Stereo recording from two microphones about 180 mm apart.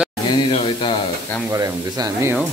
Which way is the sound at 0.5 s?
30° left (ahead or behind).